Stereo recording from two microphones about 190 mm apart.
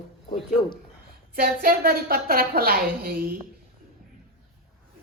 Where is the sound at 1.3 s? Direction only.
50° right (ahead or behind).